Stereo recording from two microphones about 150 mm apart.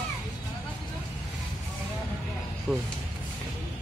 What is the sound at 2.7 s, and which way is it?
Speech, 10° left (ahead or behind).